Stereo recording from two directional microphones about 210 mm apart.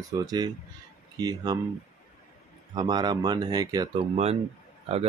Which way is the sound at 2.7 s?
20° right (ahead or behind).